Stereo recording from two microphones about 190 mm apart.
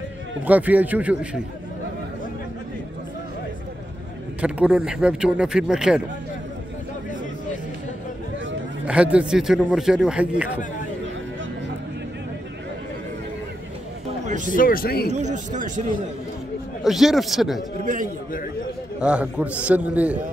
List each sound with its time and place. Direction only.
0.5 s a man's voice: 10° right (ahead or behind)
4.4 s a man's voice: 5° right (ahead or behind)
8.8 s a man's voice: 5° right (ahead or behind)
14.2 s a sound: 40° right (ahead or behind)
14.5 s speech: 50° left (ahead or behind)
15.1 s speech: 40° right (ahead or behind)
16.8 s a man's voice: centre (ahead or behind)
17.8 s a man's voice: 45° right (ahead or behind)
18.9 s a man's voice: 5° right (ahead or behind)